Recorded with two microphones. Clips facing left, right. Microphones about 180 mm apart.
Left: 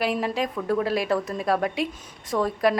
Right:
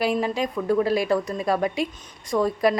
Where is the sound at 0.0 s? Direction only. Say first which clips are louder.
Right 2 dB; centre (ahead or behind).